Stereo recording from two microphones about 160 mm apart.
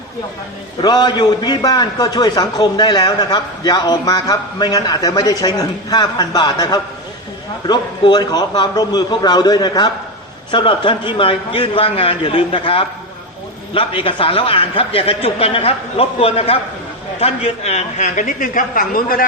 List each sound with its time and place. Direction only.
0.8 s a man's voice: 25° left (ahead or behind); by 19.2 s 65° left (ahead or behind)